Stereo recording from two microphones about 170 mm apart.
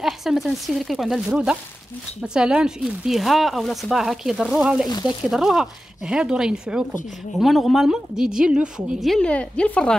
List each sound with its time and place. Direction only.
0.0 s speech: centre (ahead or behind)
4.8 s speech: 25° left (ahead or behind)
5.3 s speech: centre (ahead or behind)